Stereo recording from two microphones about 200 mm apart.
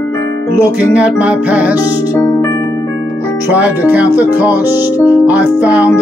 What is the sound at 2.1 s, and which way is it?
Music, 15° left (ahead or behind).